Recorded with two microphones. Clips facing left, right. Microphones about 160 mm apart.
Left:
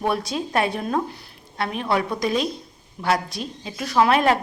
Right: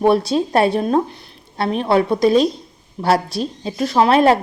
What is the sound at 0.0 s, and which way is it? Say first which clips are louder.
A woman's voice: right 9 dB; 30° right (ahead or behind).